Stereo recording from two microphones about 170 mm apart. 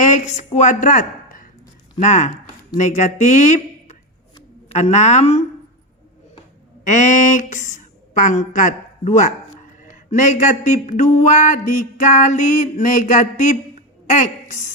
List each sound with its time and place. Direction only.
0.0 s a woman's voice: 45° left (ahead or behind)
2.0 s a sound: 45° left (ahead or behind)
4.7 s a woman's voice: 40° left (ahead or behind)
6.8 s speech: 45° left (ahead or behind)
9.8 s a sound: 50° left (ahead or behind)
14.1 s a woman's voice: 45° left (ahead or behind)